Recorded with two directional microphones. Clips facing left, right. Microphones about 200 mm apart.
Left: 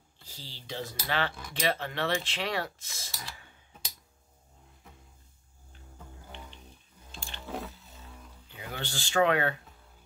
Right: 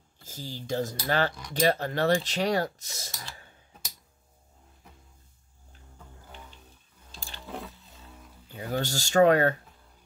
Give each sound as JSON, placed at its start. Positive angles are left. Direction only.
{"t": 0.2, "sound": "speech", "side_deg": -45}
{"t": 7.3, "sound": "a sound", "side_deg": 0}
{"t": 8.5, "sound": "speech", "side_deg": -40}